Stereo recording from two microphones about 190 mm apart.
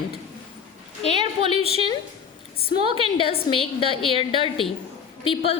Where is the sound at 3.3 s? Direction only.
30° left (ahead or behind).